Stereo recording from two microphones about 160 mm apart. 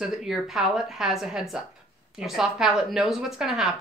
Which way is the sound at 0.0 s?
Centre (ahead or behind).